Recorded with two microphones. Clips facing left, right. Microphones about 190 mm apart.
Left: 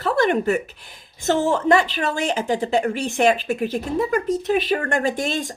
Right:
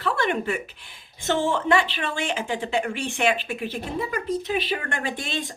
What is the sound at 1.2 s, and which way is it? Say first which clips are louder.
A woman's voice: left 4 dB; 40° left (ahead or behind).